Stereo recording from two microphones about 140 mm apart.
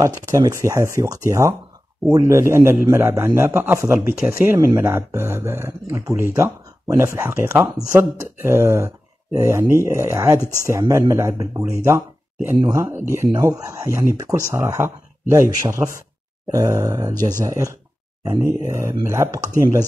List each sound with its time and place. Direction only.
0.0 s a man's voice: 25° right (ahead or behind)